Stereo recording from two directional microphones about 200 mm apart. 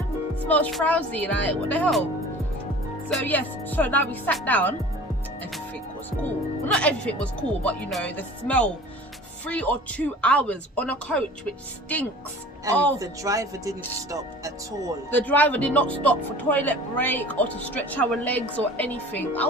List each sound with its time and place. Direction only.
0.4 s speech: 5° left (ahead or behind)
3.1 s speech: 10° left (ahead or behind)
6.7 s speech: 5° left (ahead or behind)
12.7 s speech: 15° right (ahead or behind)
15.1 s speech: 10° left (ahead or behind)